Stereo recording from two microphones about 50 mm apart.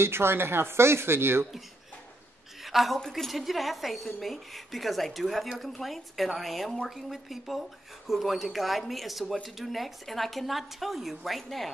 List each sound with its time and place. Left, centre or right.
0.0 s speech: right
2.6 s a sound: centre
3.1 s speech: centre